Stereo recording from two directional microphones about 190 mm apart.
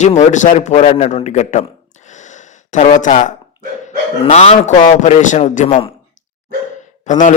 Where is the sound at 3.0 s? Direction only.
40° left (ahead or behind).